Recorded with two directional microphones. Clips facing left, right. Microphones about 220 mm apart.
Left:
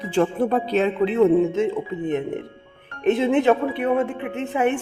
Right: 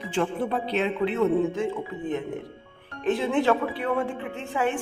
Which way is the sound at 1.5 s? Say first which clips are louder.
Left 6 dB; 25° left (ahead or behind).